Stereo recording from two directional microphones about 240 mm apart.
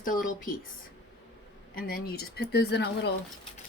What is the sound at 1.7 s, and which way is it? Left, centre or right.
A woman's voice, left.